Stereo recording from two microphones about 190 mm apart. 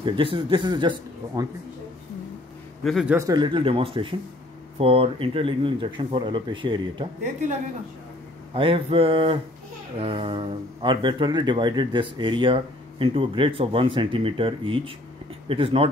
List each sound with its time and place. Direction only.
0.0 s speech: 25° right (ahead or behind)
2.8 s speech: centre (ahead or behind)
3.2 s speech: 20° right (ahead or behind)
8.5 s speech: 30° right (ahead or behind)